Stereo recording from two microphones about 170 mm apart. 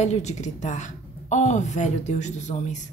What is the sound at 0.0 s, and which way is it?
A woman's voice, 40° left (ahead or behind).